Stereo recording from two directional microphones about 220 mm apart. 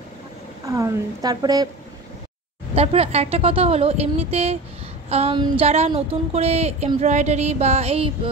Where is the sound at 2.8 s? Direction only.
25° right (ahead or behind).